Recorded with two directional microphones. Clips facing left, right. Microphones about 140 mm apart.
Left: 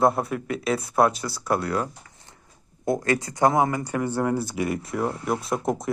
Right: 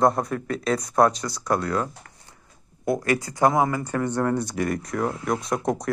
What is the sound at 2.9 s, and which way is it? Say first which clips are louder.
Speech: even; 25° left (ahead or behind).